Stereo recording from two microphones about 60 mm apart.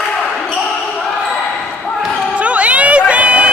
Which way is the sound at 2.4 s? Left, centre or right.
Right.